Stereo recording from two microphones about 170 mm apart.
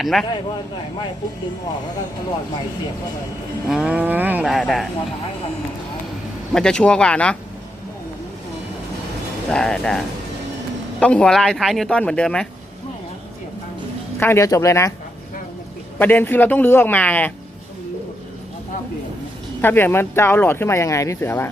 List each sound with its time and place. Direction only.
0.0 s speech: centre (ahead or behind)
3.7 s speech: 5° right (ahead or behind)
6.5 s speech: 5° left (ahead or behind)
9.5 s speech: 5° left (ahead or behind)
11.0 s speech: 5° left (ahead or behind)
14.2 s speech: 15° left (ahead or behind)
16.0 s speech: 10° left (ahead or behind)
19.6 s speech: 10° left (ahead or behind)